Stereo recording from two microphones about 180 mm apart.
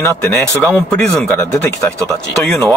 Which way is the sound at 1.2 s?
5° left (ahead or behind).